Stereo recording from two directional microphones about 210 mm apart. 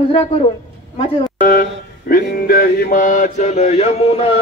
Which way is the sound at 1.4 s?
45° left (ahead or behind).